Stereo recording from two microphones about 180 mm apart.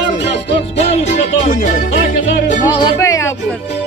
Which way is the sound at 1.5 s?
50° left (ahead or behind).